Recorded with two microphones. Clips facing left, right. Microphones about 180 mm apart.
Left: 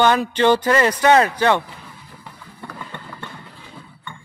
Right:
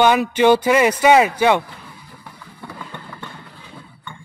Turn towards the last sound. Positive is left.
turn(degrees=0)  # may be behind; listen again after turning